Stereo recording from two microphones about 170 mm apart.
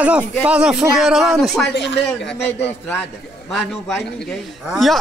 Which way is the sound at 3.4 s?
Centre (ahead or behind).